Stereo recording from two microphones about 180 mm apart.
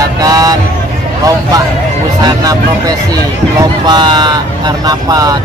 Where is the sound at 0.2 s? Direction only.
20° right (ahead or behind).